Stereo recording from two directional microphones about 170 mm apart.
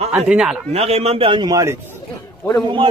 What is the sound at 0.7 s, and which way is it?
A man's voice, 35° right (ahead or behind).